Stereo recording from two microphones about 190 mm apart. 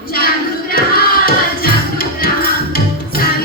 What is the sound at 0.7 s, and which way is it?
Music, 50° left (ahead or behind).